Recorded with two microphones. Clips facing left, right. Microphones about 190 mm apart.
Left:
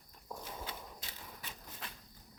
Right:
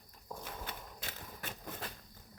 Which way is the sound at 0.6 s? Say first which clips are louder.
Even; 55° right (ahead or behind).